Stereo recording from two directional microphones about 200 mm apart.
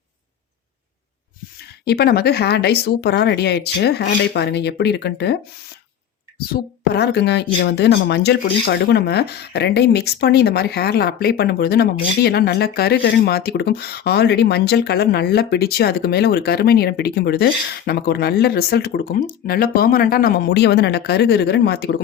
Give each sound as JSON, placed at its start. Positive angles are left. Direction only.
{"t": 1.8, "sound": "speech", "side_deg": 50}
{"t": 6.5, "sound": "speech", "side_deg": 55}